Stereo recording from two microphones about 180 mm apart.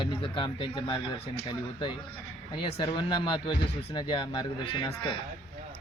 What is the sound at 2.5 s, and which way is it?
Speech, 30° left (ahead or behind).